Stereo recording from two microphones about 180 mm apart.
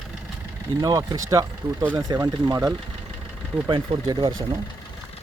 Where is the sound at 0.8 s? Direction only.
20° right (ahead or behind).